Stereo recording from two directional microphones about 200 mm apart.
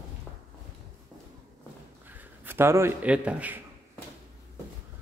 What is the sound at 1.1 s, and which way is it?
Walk, 15° right (ahead or behind).